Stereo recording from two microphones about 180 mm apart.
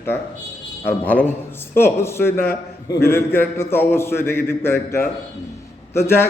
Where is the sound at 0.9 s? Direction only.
10° left (ahead or behind).